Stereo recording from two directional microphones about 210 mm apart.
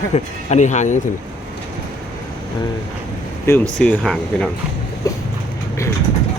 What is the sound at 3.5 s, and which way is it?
Speech, 10° left (ahead or behind).